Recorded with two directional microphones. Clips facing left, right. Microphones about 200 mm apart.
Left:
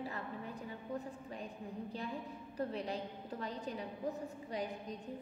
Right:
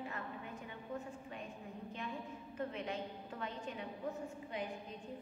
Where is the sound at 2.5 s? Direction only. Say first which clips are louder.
Left 2 dB; 35° left (ahead or behind).